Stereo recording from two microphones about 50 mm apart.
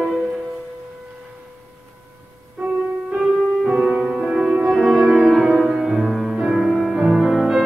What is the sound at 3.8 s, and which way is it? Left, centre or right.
Music, centre.